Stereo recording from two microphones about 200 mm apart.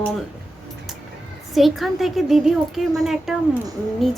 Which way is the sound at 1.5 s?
Centre (ahead or behind).